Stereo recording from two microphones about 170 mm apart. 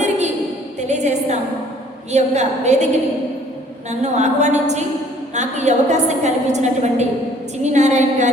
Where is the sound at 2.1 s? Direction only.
40° right (ahead or behind).